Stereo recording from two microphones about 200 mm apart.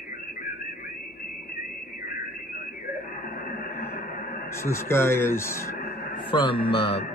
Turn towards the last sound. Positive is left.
turn(degrees=25)  # may be behind; listen again after turning